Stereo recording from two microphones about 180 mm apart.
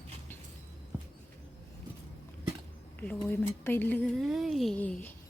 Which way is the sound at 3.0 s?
10° left (ahead or behind).